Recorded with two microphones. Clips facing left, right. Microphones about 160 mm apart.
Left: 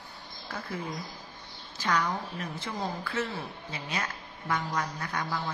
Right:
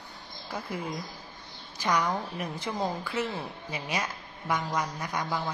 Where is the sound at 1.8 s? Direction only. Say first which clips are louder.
Right 2 dB; 15° right (ahead or behind).